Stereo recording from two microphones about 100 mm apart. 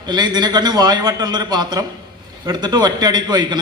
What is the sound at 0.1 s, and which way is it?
A man's voice, 45° right (ahead or behind).